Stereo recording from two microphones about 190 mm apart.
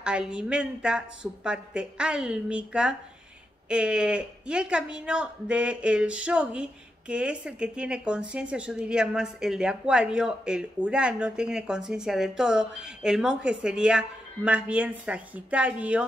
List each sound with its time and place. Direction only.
0.0 s speech: 5° right (ahead or behind)